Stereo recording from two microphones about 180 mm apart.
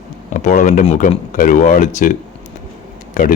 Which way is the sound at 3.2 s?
45° left (ahead or behind).